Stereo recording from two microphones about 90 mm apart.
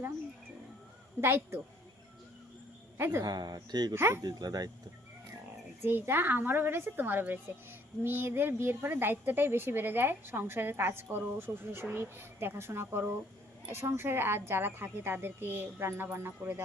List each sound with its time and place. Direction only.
1.2 s a woman's voice: 25° right (ahead or behind)
3.0 s a woman's voice: 25° right (ahead or behind)
3.2 s speech: 50° right (ahead or behind)
3.9 s a woman's voice: 25° right (ahead or behind)
4.2 s speech: 50° right (ahead or behind)
5.8 s a woman's voice: 25° right (ahead or behind)